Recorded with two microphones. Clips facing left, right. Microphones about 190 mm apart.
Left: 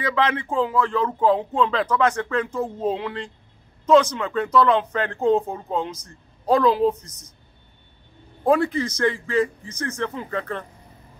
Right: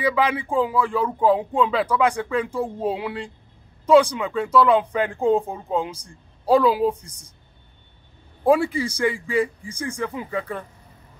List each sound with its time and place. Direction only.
0.0 s speech: 10° right (ahead or behind)
8.5 s speech: 10° right (ahead or behind)